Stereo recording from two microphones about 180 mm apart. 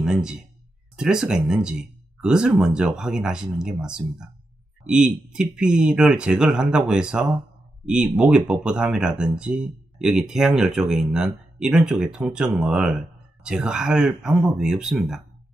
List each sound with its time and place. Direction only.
0.0 s speech: 5° right (ahead or behind)